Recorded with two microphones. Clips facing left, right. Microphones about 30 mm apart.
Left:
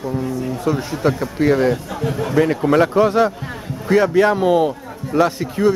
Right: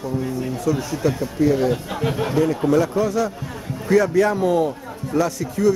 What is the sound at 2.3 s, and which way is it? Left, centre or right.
Speech, left.